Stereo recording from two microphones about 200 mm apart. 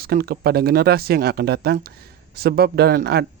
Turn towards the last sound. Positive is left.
turn(degrees=-50)  # may be behind; listen again after turning